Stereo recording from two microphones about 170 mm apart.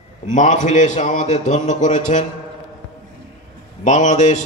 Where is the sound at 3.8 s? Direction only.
45° left (ahead or behind).